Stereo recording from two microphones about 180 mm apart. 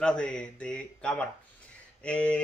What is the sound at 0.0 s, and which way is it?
Speech, 5° left (ahead or behind).